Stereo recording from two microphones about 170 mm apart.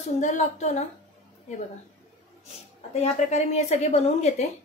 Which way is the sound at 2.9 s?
40° left (ahead or behind).